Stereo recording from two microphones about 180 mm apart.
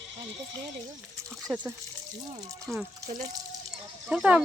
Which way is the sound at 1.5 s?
10° right (ahead or behind).